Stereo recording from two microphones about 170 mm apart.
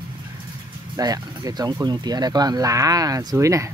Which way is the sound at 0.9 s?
20° right (ahead or behind).